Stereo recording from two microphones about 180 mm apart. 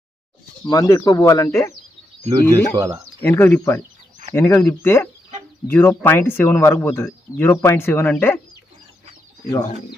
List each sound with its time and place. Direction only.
0.7 s speech: 20° left (ahead or behind)
2.5 s speech: 20° right (ahead or behind)
3.2 s speech: 10° left (ahead or behind)